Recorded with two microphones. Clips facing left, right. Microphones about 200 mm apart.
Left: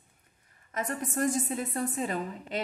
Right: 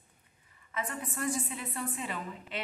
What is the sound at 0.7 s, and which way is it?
Speech, 45° left (ahead or behind).